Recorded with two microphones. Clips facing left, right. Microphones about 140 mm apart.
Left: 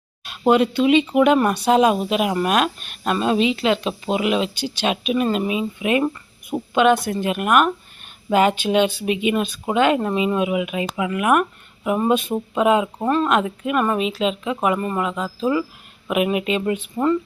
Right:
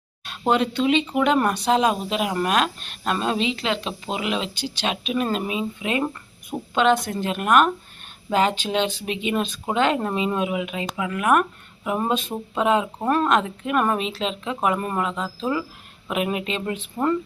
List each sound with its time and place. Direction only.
0.3 s speech: 10° left (ahead or behind)